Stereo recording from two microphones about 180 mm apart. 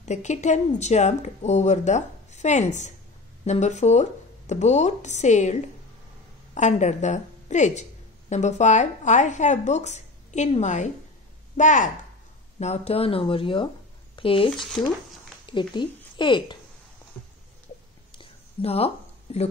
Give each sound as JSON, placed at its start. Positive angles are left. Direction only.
{"t": 0.0, "sound": "speech", "side_deg": 40}
{"t": 14.5, "sound": "speech", "side_deg": 0}
{"t": 15.4, "sound": "a woman's voice", "side_deg": 25}
{"t": 18.1, "sound": "a sound", "side_deg": 30}